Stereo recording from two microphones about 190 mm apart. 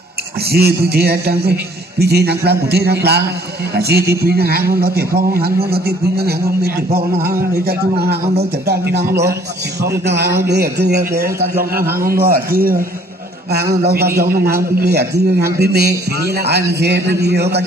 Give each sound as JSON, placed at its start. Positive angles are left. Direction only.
{"t": 0.5, "sound": "a man's voice", "side_deg": -55}
{"t": 10.5, "sound": "a man's voice", "side_deg": -60}
{"t": 11.8, "sound": "a man's voice", "side_deg": -15}
{"t": 12.1, "sound": "a man's voice", "side_deg": -50}
{"t": 13.8, "sound": "a man's voice", "side_deg": -55}